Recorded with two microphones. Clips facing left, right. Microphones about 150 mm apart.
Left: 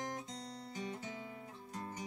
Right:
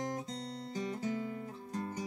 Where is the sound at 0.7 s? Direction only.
40° right (ahead or behind).